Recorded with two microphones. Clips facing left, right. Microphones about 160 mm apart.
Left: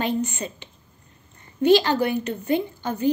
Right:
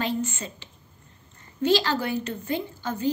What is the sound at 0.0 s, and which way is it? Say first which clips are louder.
A woman's voice: left 3 dB; 20° left (ahead or behind).